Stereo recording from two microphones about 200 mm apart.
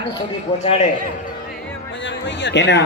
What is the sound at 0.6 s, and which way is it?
Speech, 30° left (ahead or behind).